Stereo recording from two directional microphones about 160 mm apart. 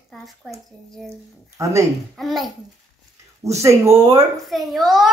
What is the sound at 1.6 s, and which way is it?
Speech, 20° right (ahead or behind).